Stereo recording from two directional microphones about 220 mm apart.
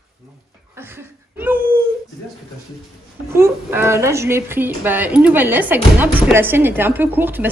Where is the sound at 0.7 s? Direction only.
10° right (ahead or behind).